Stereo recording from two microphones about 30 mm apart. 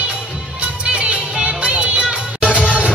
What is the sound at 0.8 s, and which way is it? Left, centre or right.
Music, right.